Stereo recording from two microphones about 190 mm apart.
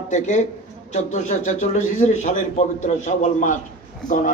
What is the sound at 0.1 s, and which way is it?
A man's voice, 40° left (ahead or behind).